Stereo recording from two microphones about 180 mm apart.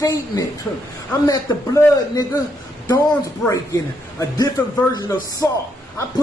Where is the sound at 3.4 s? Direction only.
20° left (ahead or behind).